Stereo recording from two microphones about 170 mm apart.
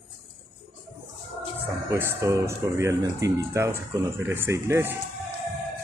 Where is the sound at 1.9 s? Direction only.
15° right (ahead or behind).